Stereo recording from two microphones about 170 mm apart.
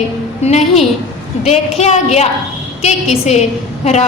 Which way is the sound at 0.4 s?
40° left (ahead or behind).